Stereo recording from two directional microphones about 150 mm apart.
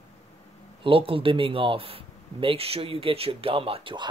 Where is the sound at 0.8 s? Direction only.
35° right (ahead or behind).